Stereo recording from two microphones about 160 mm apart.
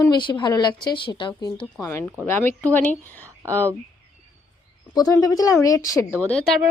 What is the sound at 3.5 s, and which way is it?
Speech, 15° right (ahead or behind).